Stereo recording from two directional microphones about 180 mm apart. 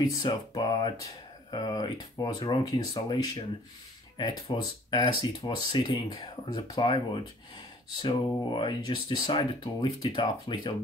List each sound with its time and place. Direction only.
0.1 s speech: 20° left (ahead or behind)
8.0 s speech: 25° left (ahead or behind)